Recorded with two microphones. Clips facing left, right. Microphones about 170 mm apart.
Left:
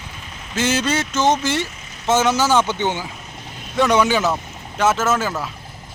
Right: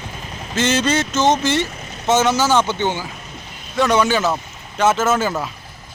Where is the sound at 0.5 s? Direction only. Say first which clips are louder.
Right 2 dB; 10° left (ahead or behind).